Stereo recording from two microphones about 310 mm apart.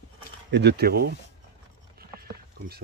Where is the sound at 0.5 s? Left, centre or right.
Right.